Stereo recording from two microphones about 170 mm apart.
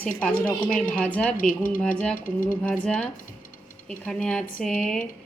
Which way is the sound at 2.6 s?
10° left (ahead or behind).